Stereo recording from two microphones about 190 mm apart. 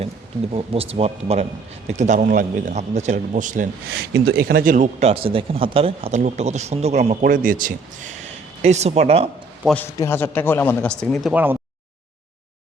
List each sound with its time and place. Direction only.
0.5 s a man's voice: 30° right (ahead or behind)
4.1 s speech: 65° right (ahead or behind); by 9.3 s 30° right (ahead or behind)
9.6 s speech: 10° left (ahead or behind); by 11.5 s 5° right (ahead or behind)